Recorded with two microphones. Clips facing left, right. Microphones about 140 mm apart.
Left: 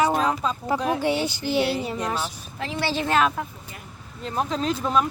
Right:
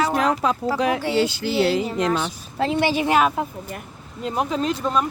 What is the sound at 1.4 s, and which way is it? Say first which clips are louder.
Speech: right 3 dB; 90° right.